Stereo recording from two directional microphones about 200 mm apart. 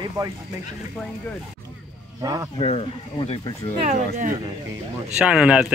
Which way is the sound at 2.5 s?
30° left (ahead or behind).